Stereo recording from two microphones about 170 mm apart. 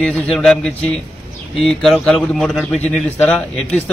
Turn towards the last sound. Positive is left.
turn(degrees=10)  # may be behind; listen again after turning